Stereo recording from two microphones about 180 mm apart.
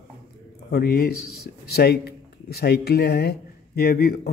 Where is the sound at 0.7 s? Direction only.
60° left (ahead or behind).